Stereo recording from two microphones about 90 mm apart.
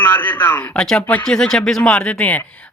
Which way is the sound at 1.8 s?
15° left (ahead or behind).